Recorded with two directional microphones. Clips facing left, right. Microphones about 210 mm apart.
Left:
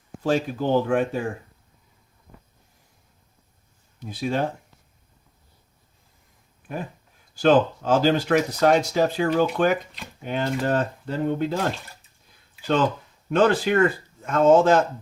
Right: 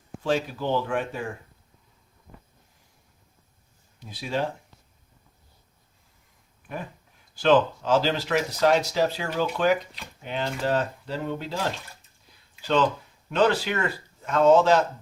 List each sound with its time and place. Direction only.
0.2 s speech: 45° left (ahead or behind)
4.0 s speech: 50° left (ahead or behind)
7.3 s speech: 45° left (ahead or behind)
13.3 s speech: 50° left (ahead or behind)